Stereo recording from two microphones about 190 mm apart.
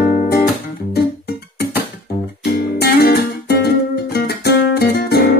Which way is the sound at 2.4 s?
55° left (ahead or behind).